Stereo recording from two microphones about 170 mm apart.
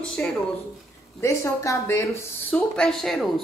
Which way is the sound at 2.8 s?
5° left (ahead or behind).